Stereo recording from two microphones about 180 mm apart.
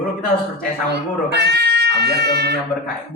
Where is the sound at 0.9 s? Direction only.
70° right (ahead or behind).